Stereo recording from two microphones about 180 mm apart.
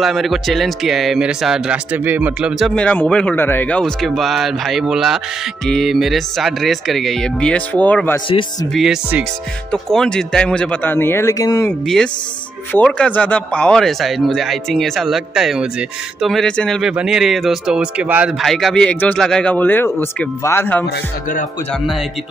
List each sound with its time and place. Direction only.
0.0 s speech: centre (ahead or behind)
2.7 s speech: 5° left (ahead or behind)
8.3 s speech: 30° left (ahead or behind)
8.7 s speech: 5° right (ahead or behind); by 11.7 s 20° left (ahead or behind)
11.8 s speech: centre (ahead or behind)
20.8 s speech: 65° left (ahead or behind)
21.7 s speech: centre (ahead or behind)